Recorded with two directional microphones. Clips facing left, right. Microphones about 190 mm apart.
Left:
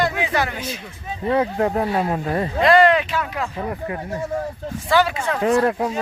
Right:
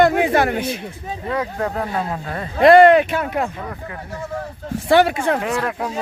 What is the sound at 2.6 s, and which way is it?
Speech, 55° right (ahead or behind).